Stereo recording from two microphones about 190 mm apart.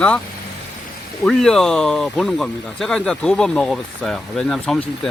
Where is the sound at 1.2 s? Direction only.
Centre (ahead or behind).